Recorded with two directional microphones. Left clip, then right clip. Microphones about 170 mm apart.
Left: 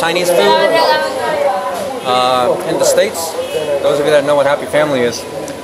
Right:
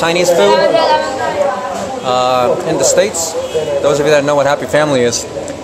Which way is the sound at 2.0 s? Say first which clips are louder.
Even; 20° right (ahead or behind).